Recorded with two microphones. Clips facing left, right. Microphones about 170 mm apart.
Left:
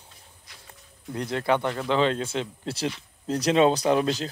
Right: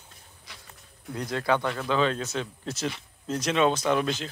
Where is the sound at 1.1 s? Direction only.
25° left (ahead or behind).